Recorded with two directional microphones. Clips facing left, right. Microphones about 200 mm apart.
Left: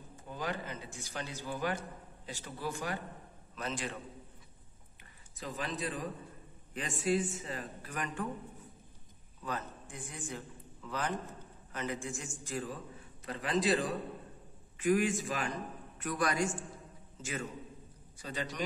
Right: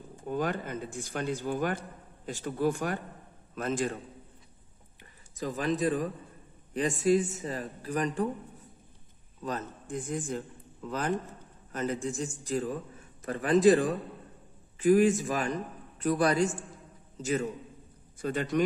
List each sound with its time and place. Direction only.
0.3 s speech: 55° right (ahead or behind)
5.3 s speech: 40° right (ahead or behind)
9.4 s a man's voice: 40° right (ahead or behind)
14.8 s speech: 35° right (ahead or behind)
18.2 s a man's voice: 55° right (ahead or behind)